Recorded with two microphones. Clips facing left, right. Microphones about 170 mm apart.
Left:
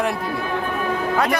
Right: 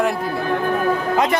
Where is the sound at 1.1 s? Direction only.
20° right (ahead or behind).